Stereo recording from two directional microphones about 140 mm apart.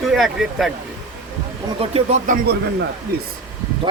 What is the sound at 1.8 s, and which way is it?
Speech, 45° right (ahead or behind).